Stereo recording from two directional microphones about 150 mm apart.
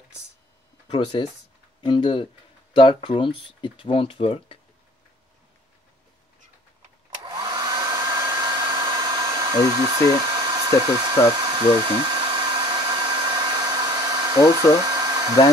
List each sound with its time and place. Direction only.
0.8 s speech: 35° left (ahead or behind)
7.2 s hair dryer: 30° right (ahead or behind)